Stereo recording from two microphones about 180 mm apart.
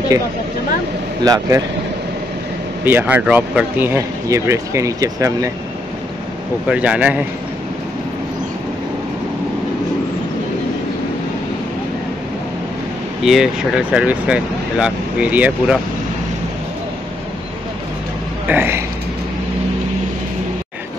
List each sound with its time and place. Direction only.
1.2 s speech: 20° right (ahead or behind)
2.8 s speech: 10° right (ahead or behind)
6.7 s speech: 5° right (ahead or behind)
13.2 s speech: centre (ahead or behind)
18.5 s speech: 10° right (ahead or behind)